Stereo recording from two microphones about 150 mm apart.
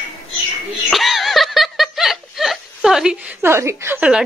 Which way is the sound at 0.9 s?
Centre (ahead or behind).